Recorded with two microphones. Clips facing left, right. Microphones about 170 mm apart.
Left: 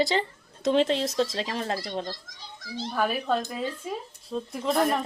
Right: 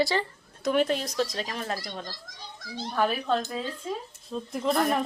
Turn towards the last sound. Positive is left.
turn(degrees=0)  # may be behind; listen again after turning